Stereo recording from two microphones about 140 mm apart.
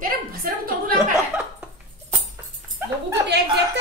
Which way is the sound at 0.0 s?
90° right.